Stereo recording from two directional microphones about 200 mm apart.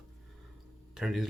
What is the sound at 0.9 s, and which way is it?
Speech, centre (ahead or behind).